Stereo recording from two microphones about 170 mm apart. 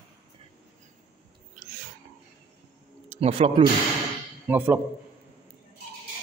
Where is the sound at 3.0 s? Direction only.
40° right (ahead or behind).